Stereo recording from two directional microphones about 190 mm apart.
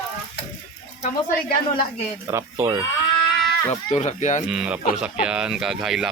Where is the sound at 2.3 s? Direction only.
15° right (ahead or behind).